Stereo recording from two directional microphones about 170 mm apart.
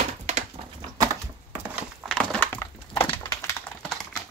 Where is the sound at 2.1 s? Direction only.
5° left (ahead or behind).